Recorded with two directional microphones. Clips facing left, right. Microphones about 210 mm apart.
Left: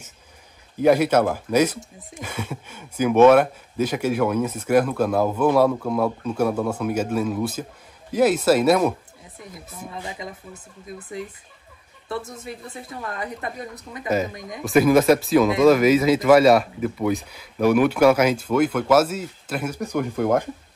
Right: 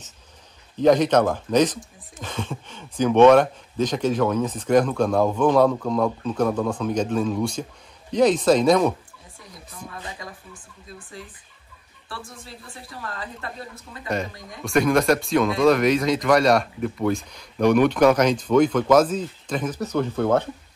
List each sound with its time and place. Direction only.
0.7 s speech: 10° left (ahead or behind)
9.8 s speech: 20° left (ahead or behind)
12.1 s speech: 20° left (ahead or behind)
14.0 s speech: 5° left (ahead or behind)